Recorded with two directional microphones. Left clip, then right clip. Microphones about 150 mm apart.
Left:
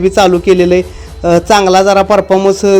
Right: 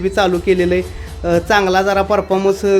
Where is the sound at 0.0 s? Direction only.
30° left (ahead or behind).